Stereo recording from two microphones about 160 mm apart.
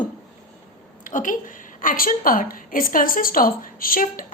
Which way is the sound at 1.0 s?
55° left (ahead or behind).